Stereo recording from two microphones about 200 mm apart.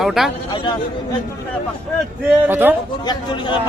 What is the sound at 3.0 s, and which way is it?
Speech, 20° left (ahead or behind).